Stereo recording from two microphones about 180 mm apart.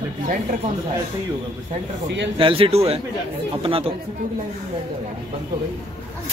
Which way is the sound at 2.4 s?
30° right (ahead or behind).